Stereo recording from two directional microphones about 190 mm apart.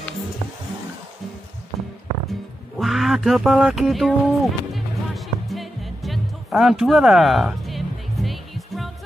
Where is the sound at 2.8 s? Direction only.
Centre (ahead or behind).